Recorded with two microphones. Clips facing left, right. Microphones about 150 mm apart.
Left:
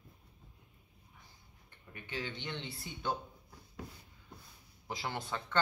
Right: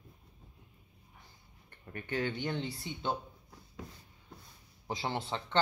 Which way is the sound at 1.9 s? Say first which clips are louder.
Right 7 dB; 55° right (ahead or behind).